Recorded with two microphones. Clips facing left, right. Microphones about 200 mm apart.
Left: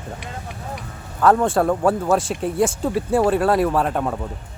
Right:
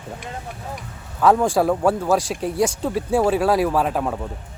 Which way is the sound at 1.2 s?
Centre (ahead or behind).